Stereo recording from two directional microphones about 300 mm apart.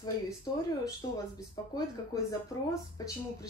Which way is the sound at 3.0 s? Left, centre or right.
Centre.